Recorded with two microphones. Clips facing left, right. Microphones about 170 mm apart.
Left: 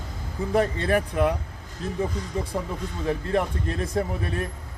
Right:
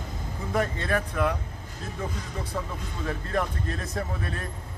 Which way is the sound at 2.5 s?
25° left (ahead or behind).